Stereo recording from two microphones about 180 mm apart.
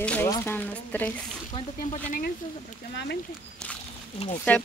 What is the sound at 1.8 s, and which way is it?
Speech, 50° left (ahead or behind).